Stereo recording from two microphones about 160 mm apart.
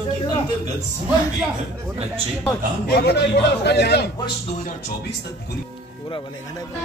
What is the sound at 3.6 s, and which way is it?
Speech, 90° left.